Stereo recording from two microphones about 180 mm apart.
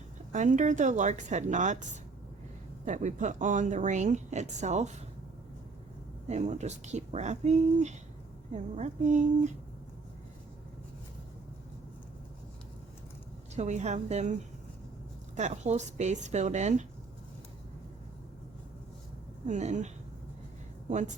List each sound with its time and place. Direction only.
0.3 s a woman's voice: 45° right (ahead or behind)
2.8 s speech: 40° right (ahead or behind)
6.2 s speech: 40° right (ahead or behind)
13.6 s speech: 40° right (ahead or behind)
15.4 s speech: 40° right (ahead or behind)
19.5 s speech: 40° right (ahead or behind)
20.9 s a woman's voice: 40° right (ahead or behind)